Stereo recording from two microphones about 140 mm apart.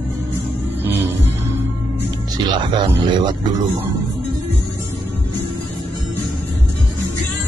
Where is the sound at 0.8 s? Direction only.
15° right (ahead or behind).